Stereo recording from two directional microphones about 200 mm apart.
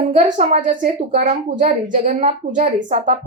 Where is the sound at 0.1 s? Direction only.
35° right (ahead or behind).